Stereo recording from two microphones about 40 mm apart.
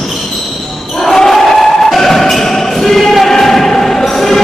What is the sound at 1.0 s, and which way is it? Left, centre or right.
Crowd, centre.